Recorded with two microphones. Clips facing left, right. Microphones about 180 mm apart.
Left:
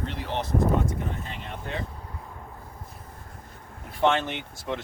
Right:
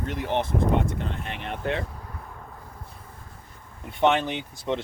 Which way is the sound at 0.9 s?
75° right (ahead or behind).